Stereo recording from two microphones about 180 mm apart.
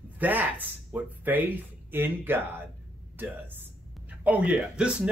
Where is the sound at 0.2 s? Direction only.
10° right (ahead or behind).